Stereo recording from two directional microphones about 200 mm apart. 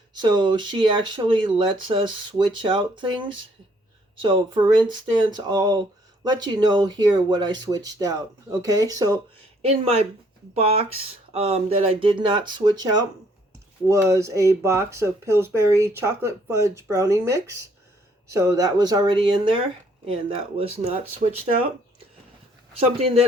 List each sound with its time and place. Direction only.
0.2 s speech: 20° right (ahead or behind)
9.6 s speech: 30° right (ahead or behind)
22.8 s speech: 30° right (ahead or behind)